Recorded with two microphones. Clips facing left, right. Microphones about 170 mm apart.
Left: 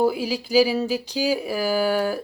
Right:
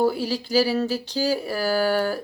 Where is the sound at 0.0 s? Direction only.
10° left (ahead or behind).